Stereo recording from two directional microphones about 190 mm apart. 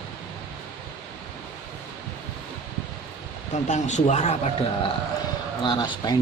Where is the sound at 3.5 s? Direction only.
40° left (ahead or behind).